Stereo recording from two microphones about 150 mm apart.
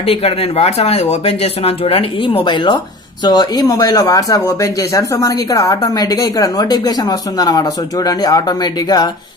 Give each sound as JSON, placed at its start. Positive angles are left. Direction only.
{"t": 0.0, "sound": "speech", "side_deg": 40}